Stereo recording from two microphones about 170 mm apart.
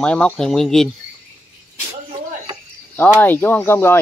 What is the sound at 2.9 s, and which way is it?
Speech, 10° left (ahead or behind).